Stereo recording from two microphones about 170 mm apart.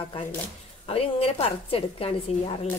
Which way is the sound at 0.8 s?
35° left (ahead or behind).